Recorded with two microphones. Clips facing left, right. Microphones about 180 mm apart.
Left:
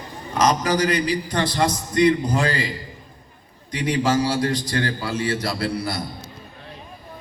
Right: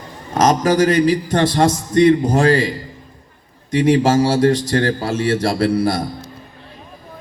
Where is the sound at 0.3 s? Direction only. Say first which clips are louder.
Right 5 dB; 45° right (ahead or behind).